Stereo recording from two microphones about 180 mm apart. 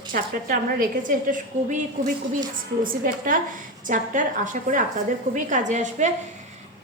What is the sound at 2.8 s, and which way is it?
A woman's voice, 50° right (ahead or behind).